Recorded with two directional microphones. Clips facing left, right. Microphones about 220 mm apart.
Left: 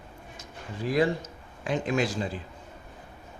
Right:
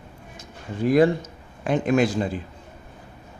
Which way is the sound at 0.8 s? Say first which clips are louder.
Right 7 dB; 55° right (ahead or behind).